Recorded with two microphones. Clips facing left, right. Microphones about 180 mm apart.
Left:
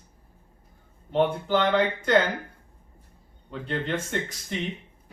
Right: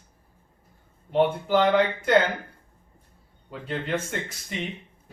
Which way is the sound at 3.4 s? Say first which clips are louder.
Left 1 dB; 5° right (ahead or behind).